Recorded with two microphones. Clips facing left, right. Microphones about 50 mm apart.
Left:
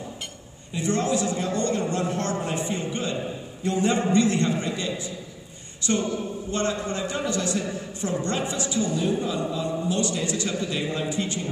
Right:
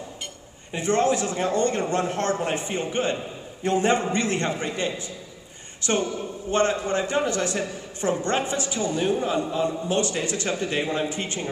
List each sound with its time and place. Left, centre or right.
0.7 s a man's voice: right